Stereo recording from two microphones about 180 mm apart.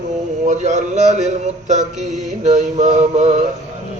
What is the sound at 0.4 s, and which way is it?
Mantra, 40° right (ahead or behind).